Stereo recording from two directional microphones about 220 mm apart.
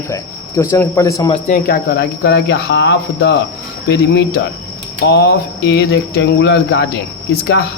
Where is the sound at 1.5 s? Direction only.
45° left (ahead or behind).